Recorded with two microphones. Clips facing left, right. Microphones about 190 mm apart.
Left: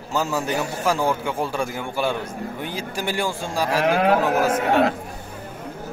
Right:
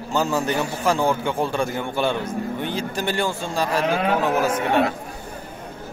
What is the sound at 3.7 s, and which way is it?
Speech, 70° left (ahead or behind).